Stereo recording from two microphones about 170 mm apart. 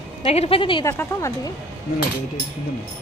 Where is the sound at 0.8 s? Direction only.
20° left (ahead or behind).